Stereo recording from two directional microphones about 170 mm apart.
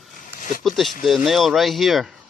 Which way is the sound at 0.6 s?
Centre (ahead or behind).